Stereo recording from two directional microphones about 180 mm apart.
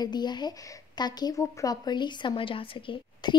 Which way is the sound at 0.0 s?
25° left (ahead or behind).